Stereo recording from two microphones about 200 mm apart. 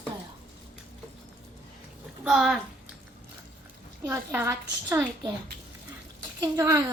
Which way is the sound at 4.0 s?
15° right (ahead or behind).